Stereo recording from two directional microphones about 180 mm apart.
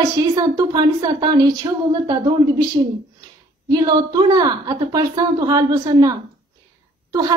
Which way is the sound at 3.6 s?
20° right (ahead or behind).